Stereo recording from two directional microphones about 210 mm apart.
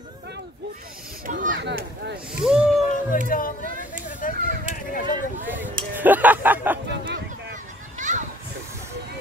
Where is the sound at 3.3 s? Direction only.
40° left (ahead or behind).